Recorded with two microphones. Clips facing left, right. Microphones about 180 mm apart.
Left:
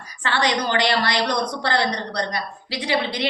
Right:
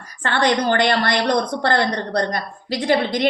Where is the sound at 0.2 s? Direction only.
55° right (ahead or behind).